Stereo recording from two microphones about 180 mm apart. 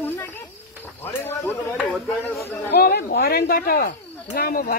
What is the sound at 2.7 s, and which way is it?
Speech, 65° left (ahead or behind).